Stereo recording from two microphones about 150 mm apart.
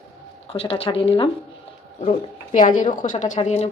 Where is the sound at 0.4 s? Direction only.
40° left (ahead or behind).